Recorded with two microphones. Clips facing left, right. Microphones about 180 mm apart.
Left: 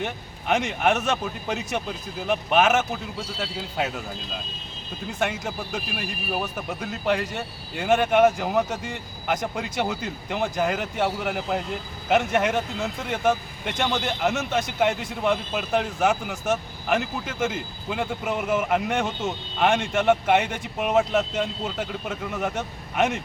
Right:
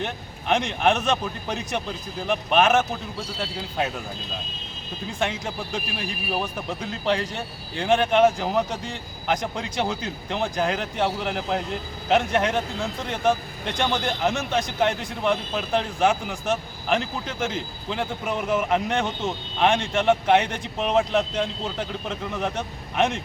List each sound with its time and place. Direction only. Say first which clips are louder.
0.0 s speech: even; 5° left (ahead or behind)
5.2 s speech: even; 5° left (ahead or behind)